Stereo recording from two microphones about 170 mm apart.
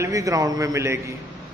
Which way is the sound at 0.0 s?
20° right (ahead or behind).